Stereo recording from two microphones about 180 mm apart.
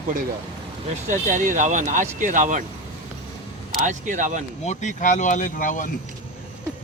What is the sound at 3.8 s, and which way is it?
Speech, 45° right (ahead or behind).